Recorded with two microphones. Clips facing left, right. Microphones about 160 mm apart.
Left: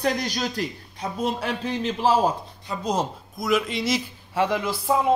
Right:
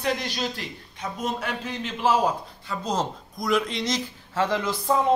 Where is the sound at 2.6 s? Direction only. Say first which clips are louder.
Left 2 dB; 10° left (ahead or behind).